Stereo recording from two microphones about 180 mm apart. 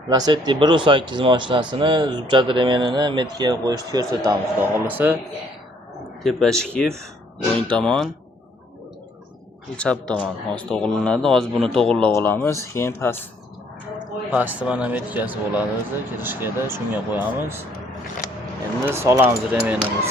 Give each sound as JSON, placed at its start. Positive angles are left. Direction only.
{"t": 0.1, "sound": "speech", "side_deg": -25}
{"t": 6.2, "sound": "speech", "side_deg": 5}
{"t": 9.7, "sound": "speech", "side_deg": 5}
{"t": 14.3, "sound": "speech", "side_deg": -10}
{"t": 18.8, "sound": "speech", "side_deg": -15}